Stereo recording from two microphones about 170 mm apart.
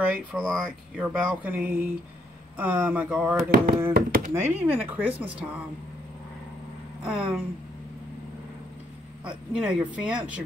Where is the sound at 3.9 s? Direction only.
60° right (ahead or behind).